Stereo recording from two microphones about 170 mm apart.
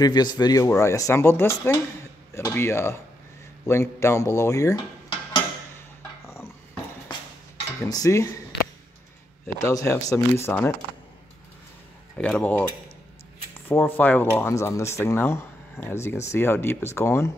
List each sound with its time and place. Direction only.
0.0 s speech: 25° left (ahead or behind)
5.8 s dog: 15° left (ahead or behind)
7.9 s speech: 20° left (ahead or behind)
9.6 s speech: 20° left (ahead or behind)
12.2 s speech: 10° left (ahead or behind)